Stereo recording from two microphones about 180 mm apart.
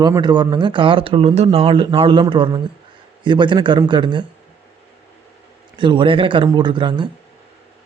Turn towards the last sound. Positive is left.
turn(degrees=-25)  # may be behind; listen again after turning